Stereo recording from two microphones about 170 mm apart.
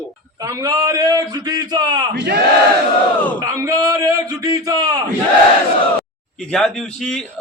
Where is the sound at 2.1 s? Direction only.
75° right (ahead or behind).